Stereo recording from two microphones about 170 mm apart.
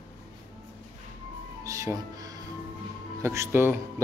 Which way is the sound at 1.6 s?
20° right (ahead or behind).